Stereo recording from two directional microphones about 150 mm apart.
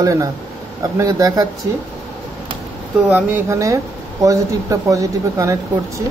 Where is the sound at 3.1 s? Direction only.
10° right (ahead or behind).